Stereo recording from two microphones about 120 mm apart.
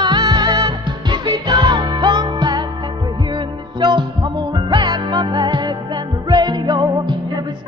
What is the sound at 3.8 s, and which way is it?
Music, 40° right (ahead or behind).